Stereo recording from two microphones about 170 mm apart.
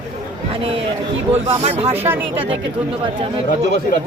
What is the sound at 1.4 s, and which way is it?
Speech, 40° right (ahead or behind).